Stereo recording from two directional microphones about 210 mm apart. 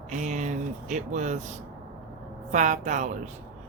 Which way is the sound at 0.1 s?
35° right (ahead or behind).